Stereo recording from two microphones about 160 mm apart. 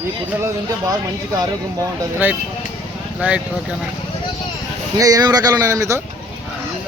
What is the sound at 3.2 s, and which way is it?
Speech, 5° right (ahead or behind).